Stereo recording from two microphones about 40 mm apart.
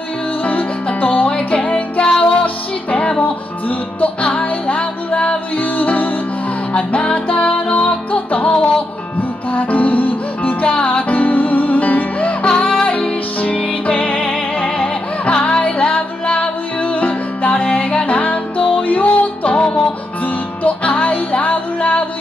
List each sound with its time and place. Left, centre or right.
0.4 s music: left
6.9 s music: left
10.7 s music: left
11.1 s music: left
12.4 s music: left